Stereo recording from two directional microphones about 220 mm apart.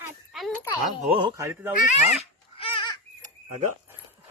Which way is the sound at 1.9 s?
30° left (ahead or behind).